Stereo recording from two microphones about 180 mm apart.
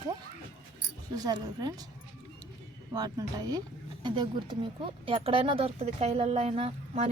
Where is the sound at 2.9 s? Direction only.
20° right (ahead or behind).